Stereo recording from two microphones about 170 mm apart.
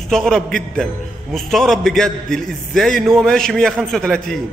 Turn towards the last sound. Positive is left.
turn(degrees=5)  # may be behind; listen again after turning